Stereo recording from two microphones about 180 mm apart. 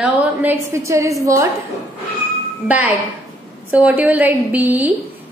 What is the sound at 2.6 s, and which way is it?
A woman's voice, 10° right (ahead or behind).